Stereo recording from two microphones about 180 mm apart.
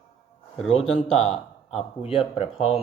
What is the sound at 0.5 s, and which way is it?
Speech, 35° left (ahead or behind).